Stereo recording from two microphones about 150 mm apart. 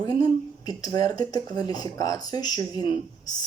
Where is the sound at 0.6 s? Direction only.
25° left (ahead or behind).